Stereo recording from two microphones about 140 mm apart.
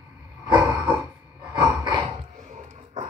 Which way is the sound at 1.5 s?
25° right (ahead or behind).